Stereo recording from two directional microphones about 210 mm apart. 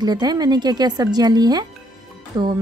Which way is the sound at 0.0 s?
20° right (ahead or behind).